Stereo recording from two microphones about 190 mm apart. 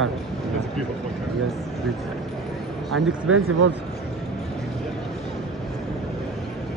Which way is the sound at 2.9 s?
90° right.